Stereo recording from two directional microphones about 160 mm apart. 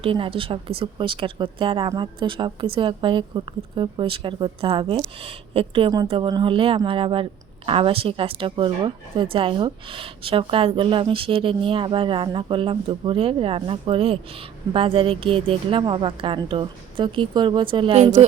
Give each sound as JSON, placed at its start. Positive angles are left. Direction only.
{"t": 0.0, "sound": "a woman's voice", "side_deg": -35}